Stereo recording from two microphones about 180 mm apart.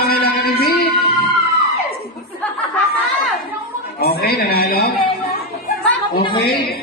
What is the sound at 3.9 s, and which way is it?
Speech, 60° left (ahead or behind).